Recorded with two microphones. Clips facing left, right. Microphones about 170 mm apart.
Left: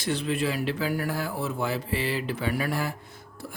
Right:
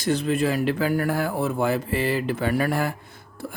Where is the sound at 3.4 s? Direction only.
55° right (ahead or behind).